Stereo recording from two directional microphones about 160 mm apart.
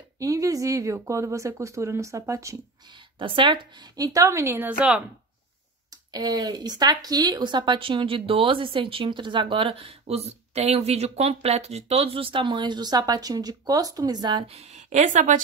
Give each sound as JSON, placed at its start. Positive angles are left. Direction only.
{"t": 0.2, "sound": "speech", "side_deg": -20}
{"t": 3.2, "sound": "speech", "side_deg": -30}
{"t": 6.1, "sound": "speech", "side_deg": -25}
{"t": 14.5, "sound": "speech", "side_deg": -45}